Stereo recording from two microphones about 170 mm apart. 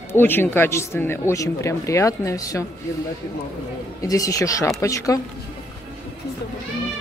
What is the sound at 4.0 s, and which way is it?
Speech, 20° left (ahead or behind).